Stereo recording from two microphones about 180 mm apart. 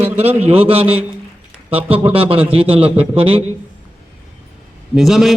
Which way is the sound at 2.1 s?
30° right (ahead or behind).